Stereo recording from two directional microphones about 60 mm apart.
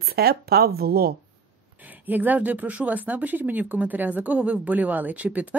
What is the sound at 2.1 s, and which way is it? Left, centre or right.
Speech, right.